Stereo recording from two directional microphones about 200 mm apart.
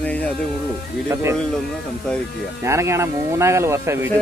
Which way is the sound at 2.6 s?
15° right (ahead or behind).